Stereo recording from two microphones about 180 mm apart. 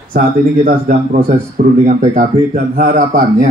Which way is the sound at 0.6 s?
45° right (ahead or behind).